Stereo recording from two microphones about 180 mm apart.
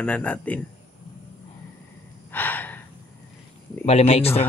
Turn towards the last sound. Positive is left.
turn(degrees=35)  # may be behind; listen again after turning